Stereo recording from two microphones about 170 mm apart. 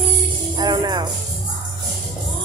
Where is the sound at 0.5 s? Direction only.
25° right (ahead or behind).